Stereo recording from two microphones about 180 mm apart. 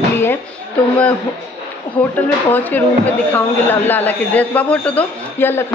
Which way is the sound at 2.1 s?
10° left (ahead or behind).